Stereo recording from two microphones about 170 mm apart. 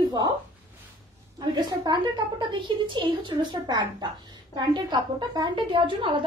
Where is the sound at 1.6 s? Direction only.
25° right (ahead or behind).